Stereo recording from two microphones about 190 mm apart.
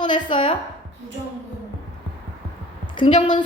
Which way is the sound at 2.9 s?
25° left (ahead or behind).